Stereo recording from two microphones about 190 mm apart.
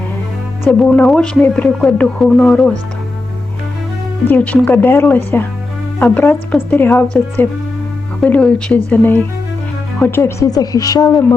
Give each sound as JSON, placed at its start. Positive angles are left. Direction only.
{"t": 0.6, "sound": "speech", "side_deg": 5}
{"t": 4.3, "sound": "a woman's voice", "side_deg": 5}